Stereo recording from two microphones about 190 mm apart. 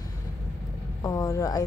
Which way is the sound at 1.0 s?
15° left (ahead or behind).